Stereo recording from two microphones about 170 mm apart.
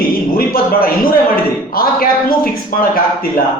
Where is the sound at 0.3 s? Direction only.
60° left (ahead or behind).